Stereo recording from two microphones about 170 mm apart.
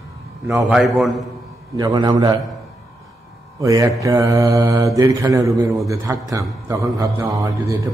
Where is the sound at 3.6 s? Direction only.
20° right (ahead or behind).